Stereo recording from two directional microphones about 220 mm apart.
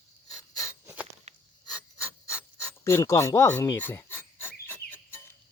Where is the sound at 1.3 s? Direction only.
30° right (ahead or behind).